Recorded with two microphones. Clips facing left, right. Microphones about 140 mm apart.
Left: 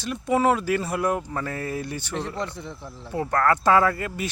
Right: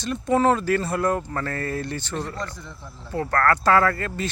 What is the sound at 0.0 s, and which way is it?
Speech, 5° left (ahead or behind).